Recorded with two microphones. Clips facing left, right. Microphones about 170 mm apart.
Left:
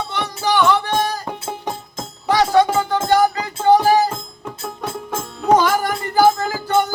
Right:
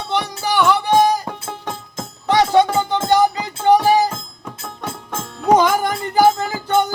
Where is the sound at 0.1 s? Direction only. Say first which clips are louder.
Right 2 dB; 10° right (ahead or behind).